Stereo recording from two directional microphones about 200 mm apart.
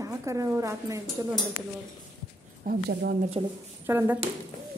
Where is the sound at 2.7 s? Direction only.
50° right (ahead or behind).